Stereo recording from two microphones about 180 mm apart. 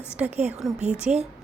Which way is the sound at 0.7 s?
40° right (ahead or behind).